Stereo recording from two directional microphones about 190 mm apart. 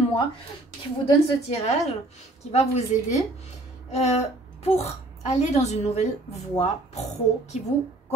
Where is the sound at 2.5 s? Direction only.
35° left (ahead or behind).